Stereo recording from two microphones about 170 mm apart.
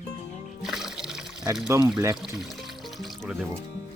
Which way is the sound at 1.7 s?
15° right (ahead or behind).